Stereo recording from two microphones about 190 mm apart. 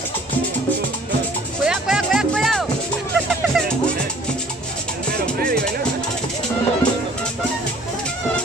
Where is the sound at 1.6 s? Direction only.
5° right (ahead or behind).